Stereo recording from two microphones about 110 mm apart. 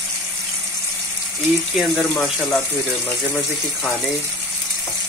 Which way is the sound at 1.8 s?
Centre (ahead or behind).